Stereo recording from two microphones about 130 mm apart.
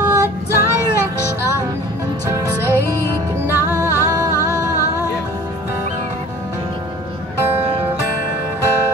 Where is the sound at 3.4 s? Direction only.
20° right (ahead or behind).